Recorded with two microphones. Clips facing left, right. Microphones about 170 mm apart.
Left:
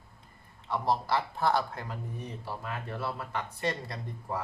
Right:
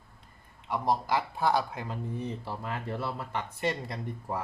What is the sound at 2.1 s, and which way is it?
Speech, 30° right (ahead or behind).